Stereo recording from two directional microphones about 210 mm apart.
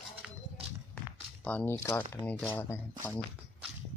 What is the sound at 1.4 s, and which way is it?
Speech, 10° left (ahead or behind).